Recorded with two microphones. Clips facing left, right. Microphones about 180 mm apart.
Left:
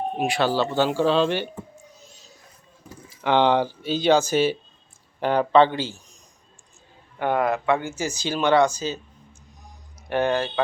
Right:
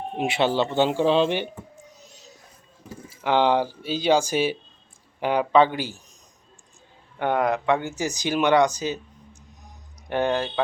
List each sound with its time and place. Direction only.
0.2 s speech: 20° right (ahead or behind)
2.0 s music: 20° right (ahead or behind)
3.2 s speech: 5° right (ahead or behind)
7.2 s speech: 15° right (ahead or behind)
9.6 s a sound: 15° right (ahead or behind)